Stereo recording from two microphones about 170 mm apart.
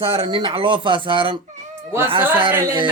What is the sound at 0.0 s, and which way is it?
Mantra, 35° right (ahead or behind).